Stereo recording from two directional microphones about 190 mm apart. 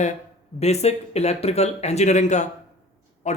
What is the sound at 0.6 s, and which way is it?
Speech, 35° left (ahead or behind).